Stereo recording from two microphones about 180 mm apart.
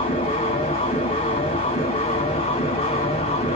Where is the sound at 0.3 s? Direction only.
35° left (ahead or behind).